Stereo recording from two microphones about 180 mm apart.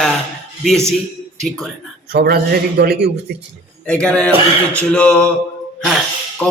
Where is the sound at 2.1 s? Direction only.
60° right (ahead or behind).